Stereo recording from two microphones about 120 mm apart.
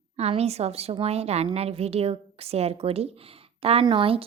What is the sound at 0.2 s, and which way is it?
A woman's voice, 60° right (ahead or behind).